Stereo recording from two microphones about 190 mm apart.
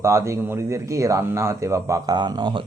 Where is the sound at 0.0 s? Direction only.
15° right (ahead or behind).